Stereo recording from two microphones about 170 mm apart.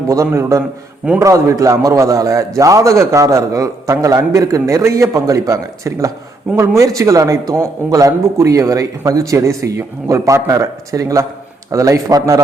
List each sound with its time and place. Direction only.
0.1 s a man's voice: 20° right (ahead or behind)